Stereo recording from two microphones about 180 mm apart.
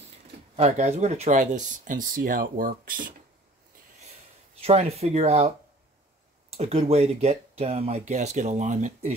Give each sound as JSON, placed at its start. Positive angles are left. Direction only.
{"t": 0.6, "sound": "speech", "side_deg": -35}
{"t": 4.6, "sound": "speech", "side_deg": -35}
{"t": 6.5, "sound": "speech", "side_deg": -35}